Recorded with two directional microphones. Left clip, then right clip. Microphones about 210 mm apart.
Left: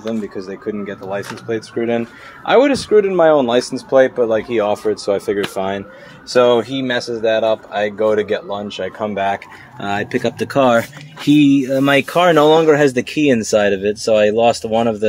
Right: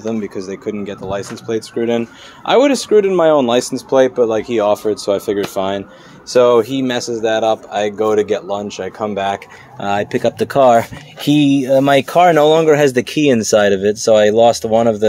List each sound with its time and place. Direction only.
0.0 s speech: 25° right (ahead or behind)